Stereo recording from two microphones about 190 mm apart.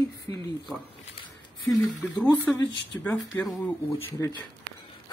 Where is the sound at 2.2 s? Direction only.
10° left (ahead or behind).